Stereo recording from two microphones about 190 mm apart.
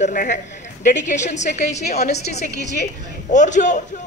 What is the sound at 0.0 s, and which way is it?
A man's voice, 45° left (ahead or behind).